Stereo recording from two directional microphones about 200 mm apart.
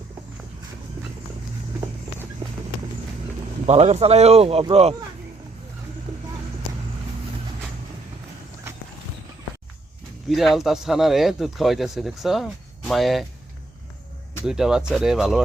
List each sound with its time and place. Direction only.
3.7 s speech: 35° right (ahead or behind)
10.2 s speech: centre (ahead or behind)
14.4 s speech: 5° right (ahead or behind)